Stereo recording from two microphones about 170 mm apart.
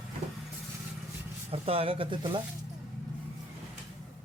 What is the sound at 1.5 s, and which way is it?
Speech, 35° right (ahead or behind).